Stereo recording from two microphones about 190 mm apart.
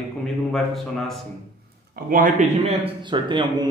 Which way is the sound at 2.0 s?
45° right (ahead or behind).